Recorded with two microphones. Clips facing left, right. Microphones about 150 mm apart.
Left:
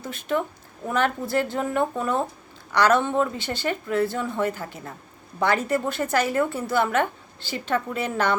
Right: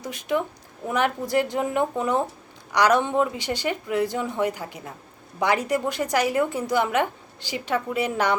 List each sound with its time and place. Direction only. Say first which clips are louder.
0.0 s a woman's voice: right 1 dB; 15° right (ahead or behind)